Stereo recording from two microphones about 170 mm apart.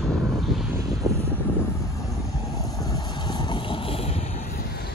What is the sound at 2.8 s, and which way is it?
Vehicle, 20° left (ahead or behind).